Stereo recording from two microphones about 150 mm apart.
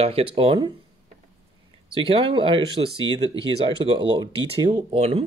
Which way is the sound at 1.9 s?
35° right (ahead or behind).